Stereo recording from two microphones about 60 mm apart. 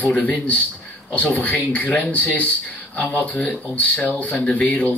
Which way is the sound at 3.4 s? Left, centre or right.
Left.